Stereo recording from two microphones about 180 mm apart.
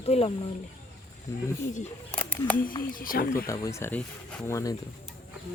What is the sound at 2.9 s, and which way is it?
Speech, 50° left (ahead or behind).